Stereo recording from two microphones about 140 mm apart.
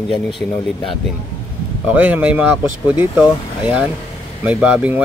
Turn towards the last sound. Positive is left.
turn(degrees=-10)  # may be behind; listen again after turning